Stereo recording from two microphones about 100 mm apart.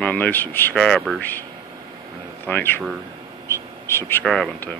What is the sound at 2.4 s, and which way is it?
Speech, 20° left (ahead or behind).